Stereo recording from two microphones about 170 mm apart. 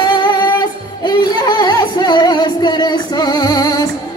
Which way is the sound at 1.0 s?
25° left (ahead or behind).